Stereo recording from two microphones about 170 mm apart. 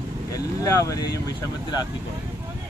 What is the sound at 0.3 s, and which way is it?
Speech, 20° left (ahead or behind).